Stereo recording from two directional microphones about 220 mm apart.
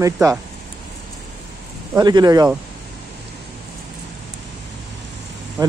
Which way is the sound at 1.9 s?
20° right (ahead or behind).